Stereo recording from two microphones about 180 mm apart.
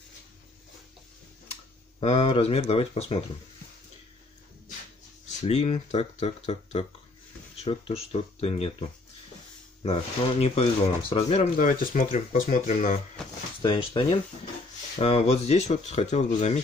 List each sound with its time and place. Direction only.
2.0 s speech: 35° left (ahead or behind)
5.4 s speech: 35° left (ahead or behind)
10.4 s speech: 35° left (ahead or behind)
13.6 s speech: 30° left (ahead or behind)